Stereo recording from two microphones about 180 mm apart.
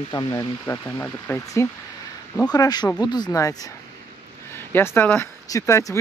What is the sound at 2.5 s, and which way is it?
Speech, 20° left (ahead or behind).